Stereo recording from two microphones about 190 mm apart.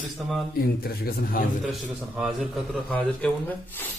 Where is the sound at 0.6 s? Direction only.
50° left (ahead or behind).